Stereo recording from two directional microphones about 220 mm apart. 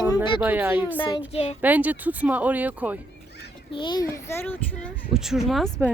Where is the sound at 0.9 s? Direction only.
20° left (ahead or behind).